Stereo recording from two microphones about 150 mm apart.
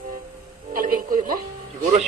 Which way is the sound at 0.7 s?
70° right (ahead or behind).